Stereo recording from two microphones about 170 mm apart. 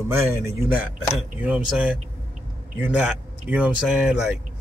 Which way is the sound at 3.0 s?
10° right (ahead or behind).